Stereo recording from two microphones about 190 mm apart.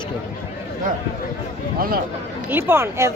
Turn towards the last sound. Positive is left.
turn(degrees=-15)  # may be behind; listen again after turning